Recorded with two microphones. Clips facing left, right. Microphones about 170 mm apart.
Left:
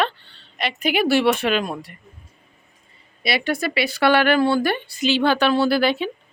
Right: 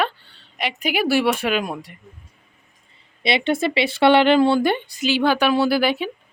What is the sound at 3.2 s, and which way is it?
Speech, 25° right (ahead or behind).